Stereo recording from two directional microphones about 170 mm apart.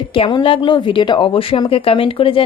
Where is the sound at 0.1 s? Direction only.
30° left (ahead or behind).